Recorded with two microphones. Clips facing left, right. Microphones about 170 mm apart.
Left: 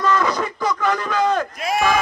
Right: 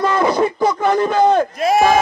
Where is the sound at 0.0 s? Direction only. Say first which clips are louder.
Right 5 dB; 30° right (ahead or behind).